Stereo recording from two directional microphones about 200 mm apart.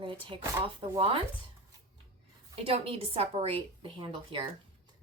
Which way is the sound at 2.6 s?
30° right (ahead or behind).